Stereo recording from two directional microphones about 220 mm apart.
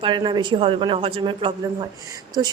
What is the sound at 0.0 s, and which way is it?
Speech, 20° right (ahead or behind).